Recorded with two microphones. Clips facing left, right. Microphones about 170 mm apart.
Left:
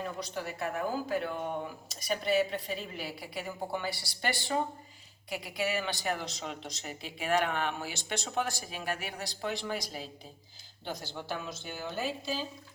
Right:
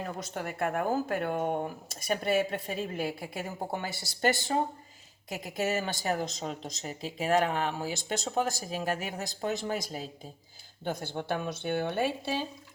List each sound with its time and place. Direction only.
0.0 s a woman's voice: 50° right (ahead or behind)